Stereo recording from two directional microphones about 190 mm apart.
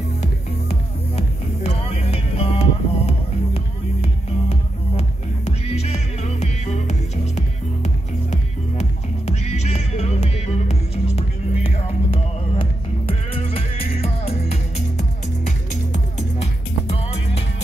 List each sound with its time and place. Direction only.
0.7 s music: 30° left (ahead or behind)